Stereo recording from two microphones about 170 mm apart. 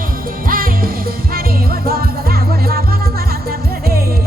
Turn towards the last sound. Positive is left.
turn(degrees=-65)  # may be behind; listen again after turning